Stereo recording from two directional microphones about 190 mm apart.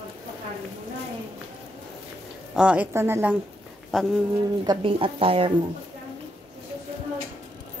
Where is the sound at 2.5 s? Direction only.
5° right (ahead or behind).